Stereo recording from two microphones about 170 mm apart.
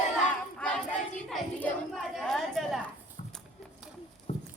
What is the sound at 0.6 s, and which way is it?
Child singing, 5° left (ahead or behind).